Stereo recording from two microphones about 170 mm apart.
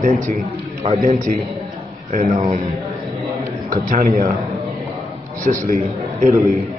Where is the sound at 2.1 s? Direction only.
55° right (ahead or behind).